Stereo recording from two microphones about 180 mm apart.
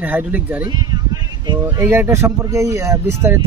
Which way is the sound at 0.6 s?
25° right (ahead or behind).